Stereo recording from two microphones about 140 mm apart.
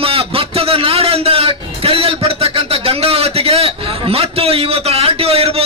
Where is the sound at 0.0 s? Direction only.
40° right (ahead or behind).